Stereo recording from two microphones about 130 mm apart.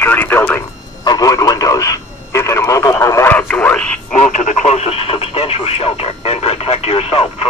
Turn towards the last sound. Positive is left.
turn(degrees=45)  # may be behind; listen again after turning